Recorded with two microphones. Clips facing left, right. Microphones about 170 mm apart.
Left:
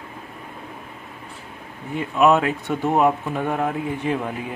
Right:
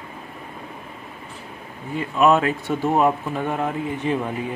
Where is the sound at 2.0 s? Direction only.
15° left (ahead or behind).